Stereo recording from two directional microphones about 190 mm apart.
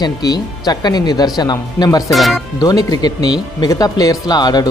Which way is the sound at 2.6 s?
20° left (ahead or behind).